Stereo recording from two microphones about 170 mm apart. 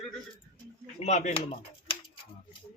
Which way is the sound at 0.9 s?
40° left (ahead or behind).